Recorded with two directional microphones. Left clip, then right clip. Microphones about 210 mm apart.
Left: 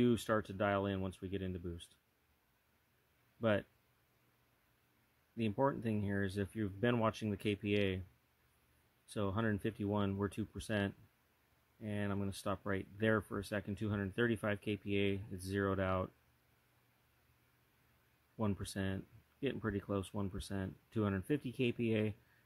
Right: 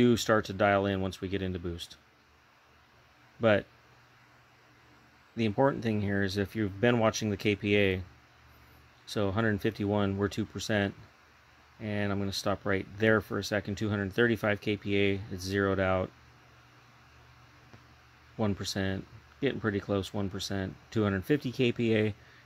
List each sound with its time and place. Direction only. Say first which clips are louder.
0.0 s speech: right 9 dB; 5° left (ahead or behind)
3.3 s speech: right 10 dB; 5° left (ahead or behind)
5.4 s speech: right 8 dB; 5° left (ahead or behind)
9.1 s speech: right 9 dB; 5° left (ahead or behind)
18.4 s speech: right 9 dB; 10° left (ahead or behind)